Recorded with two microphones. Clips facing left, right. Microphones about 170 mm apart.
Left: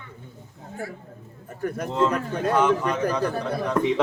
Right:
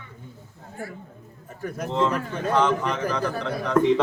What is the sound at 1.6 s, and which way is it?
Speech, 55° left (ahead or behind).